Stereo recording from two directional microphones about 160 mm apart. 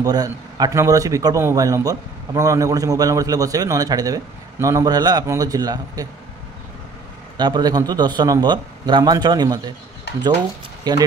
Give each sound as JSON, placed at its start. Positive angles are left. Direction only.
{"t": 0.0, "sound": "a man's voice", "side_deg": -25}
{"t": 7.3, "sound": "a man's voice", "side_deg": -25}
{"t": 10.8, "sound": "speech", "side_deg": -25}